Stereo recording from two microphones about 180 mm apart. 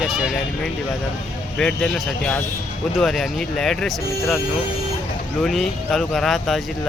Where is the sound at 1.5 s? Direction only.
5° left (ahead or behind).